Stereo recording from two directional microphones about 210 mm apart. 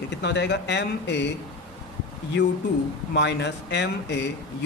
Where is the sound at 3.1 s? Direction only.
55° left (ahead or behind).